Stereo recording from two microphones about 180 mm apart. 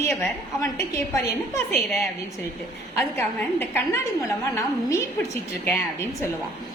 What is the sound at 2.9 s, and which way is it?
A woman's voice, 10° left (ahead or behind).